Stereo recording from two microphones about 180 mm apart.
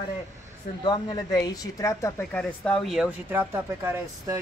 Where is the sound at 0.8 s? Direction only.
25° left (ahead or behind).